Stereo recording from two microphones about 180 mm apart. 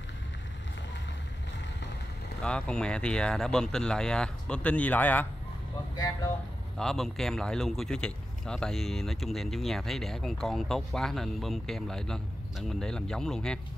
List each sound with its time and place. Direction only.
2.4 s speech: 5° left (ahead or behind)
6.8 s speech: centre (ahead or behind)